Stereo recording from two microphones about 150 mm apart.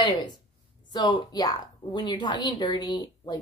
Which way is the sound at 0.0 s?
30° left (ahead or behind).